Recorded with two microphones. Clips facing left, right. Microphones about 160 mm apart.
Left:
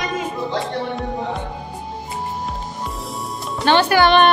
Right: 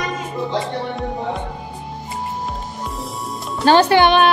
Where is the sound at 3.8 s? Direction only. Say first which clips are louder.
Right 2 dB; 20° right (ahead or behind).